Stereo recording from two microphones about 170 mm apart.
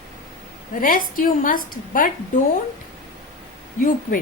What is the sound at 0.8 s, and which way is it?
A woman's voice, 55° left (ahead or behind).